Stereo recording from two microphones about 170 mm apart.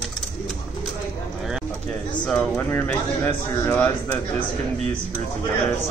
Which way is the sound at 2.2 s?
5° left (ahead or behind).